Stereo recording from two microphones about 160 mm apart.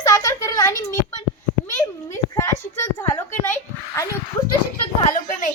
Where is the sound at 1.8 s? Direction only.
15° left (ahead or behind).